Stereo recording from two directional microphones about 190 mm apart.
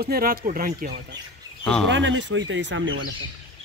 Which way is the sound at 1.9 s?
75° right (ahead or behind).